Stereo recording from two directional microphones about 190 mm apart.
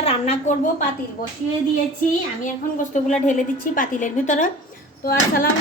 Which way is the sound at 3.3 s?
45° left (ahead or behind).